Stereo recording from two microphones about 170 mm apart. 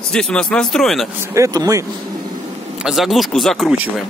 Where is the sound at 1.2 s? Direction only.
15° right (ahead or behind).